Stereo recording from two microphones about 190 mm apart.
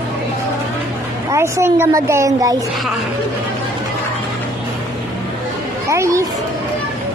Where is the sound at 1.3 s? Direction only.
15° right (ahead or behind).